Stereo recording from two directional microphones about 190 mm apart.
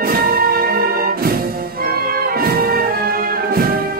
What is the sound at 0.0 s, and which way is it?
Music, 50° right (ahead or behind).